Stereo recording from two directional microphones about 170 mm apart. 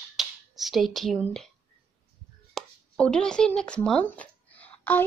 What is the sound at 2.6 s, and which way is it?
Speech, 5° left (ahead or behind).